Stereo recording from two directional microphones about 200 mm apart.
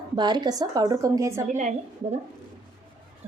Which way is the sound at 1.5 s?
35° right (ahead or behind).